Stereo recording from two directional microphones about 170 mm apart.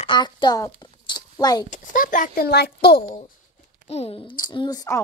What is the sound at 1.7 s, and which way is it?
A child's voice, 50° left (ahead or behind).